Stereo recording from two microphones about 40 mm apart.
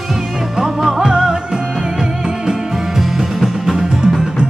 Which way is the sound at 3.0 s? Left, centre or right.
Centre.